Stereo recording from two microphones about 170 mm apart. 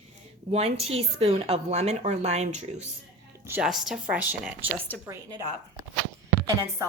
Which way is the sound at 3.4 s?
10° right (ahead or behind).